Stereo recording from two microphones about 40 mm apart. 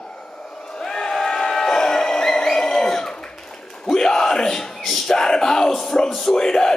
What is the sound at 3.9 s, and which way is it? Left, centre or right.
Yell, centre.